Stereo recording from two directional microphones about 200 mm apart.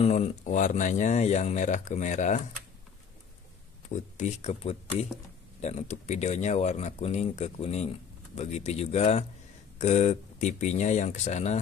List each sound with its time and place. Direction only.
0.0 s speech: 35° left (ahead or behind)
3.9 s speech: 35° left (ahead or behind)